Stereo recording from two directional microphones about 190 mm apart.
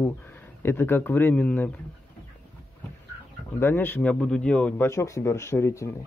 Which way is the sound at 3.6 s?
10° left (ahead or behind).